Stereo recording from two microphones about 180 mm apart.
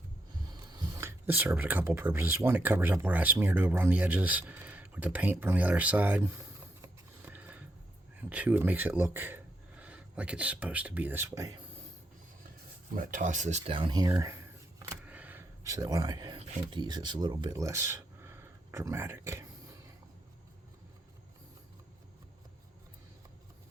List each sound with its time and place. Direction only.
0.4 s speech: 20° right (ahead or behind)
6.8 s a sound: 10° right (ahead or behind)
8.3 s speech: 10° right (ahead or behind)
12.9 s speech: 50° right (ahead or behind); by 14.1 s 25° right (ahead or behind)
14.1 s camera: 15° right (ahead or behind)
16.7 s speech: 25° right (ahead or behind)